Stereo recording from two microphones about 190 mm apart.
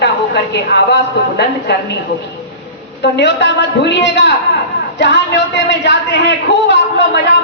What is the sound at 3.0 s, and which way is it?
A man's voice, 65° left (ahead or behind).